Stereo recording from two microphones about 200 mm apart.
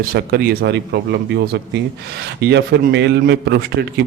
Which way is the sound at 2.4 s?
55° right (ahead or behind).